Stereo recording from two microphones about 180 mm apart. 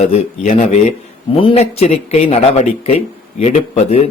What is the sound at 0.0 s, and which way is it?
A man's voice, 40° left (ahead or behind).